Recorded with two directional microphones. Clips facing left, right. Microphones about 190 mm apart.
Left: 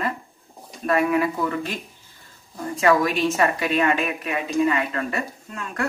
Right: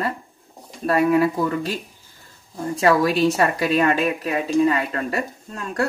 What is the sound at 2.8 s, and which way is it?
A woman's voice, 35° right (ahead or behind).